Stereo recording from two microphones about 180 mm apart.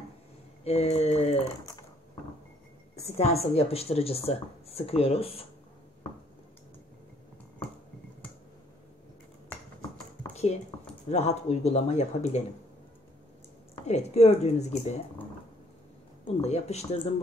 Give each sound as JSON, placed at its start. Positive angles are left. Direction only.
{"t": 0.7, "sound": "a woman's voice", "side_deg": 35}
{"t": 3.0, "sound": "a woman's voice", "side_deg": 35}
{"t": 9.5, "sound": "clip-clop", "side_deg": 10}
{"t": 10.3, "sound": "computer keyboard", "side_deg": 35}
{"t": 11.1, "sound": "a woman's voice", "side_deg": 40}
{"t": 13.8, "sound": "a woman's voice", "side_deg": 40}
{"t": 16.3, "sound": "a woman's voice", "side_deg": 35}